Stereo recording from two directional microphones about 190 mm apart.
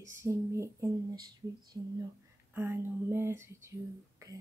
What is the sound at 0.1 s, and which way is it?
Speech, 15° right (ahead or behind).